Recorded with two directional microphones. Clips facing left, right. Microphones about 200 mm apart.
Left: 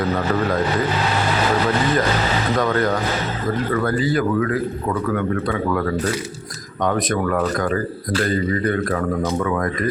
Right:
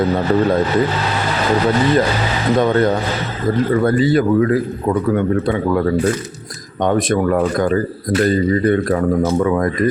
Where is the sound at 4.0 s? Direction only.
25° right (ahead or behind).